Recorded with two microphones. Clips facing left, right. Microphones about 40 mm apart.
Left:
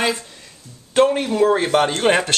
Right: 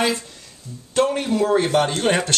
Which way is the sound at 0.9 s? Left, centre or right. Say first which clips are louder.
Left 3 dB; left.